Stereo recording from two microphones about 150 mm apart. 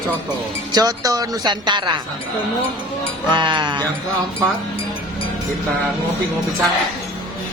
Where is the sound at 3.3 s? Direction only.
30° right (ahead or behind).